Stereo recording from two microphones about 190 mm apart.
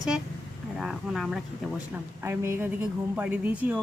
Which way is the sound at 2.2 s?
15° right (ahead or behind).